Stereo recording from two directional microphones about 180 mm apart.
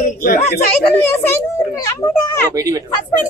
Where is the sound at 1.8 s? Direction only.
15° left (ahead or behind).